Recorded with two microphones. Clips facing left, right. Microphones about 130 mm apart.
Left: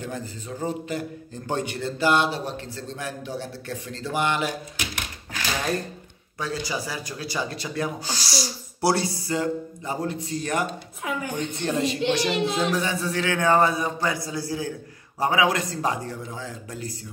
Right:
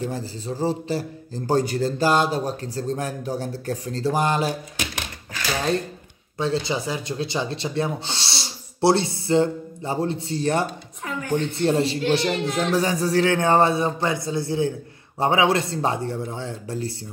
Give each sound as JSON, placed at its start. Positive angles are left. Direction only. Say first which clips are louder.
{"t": 0.0, "sound": "a man's voice", "louder": "right 4 dB", "side_deg": -30}
{"t": 6.3, "sound": "speech", "louder": "right 5 dB", "side_deg": -25}
{"t": 11.1, "sound": "speech", "louder": "right 4 dB", "side_deg": 10}
{"t": 11.6, "sound": "a man's voice", "louder": "right 3 dB", "side_deg": -30}
{"t": 12.3, "sound": "speech", "louder": "even", "side_deg": 15}
{"t": 12.7, "sound": "speech", "louder": "right 5 dB", "side_deg": -40}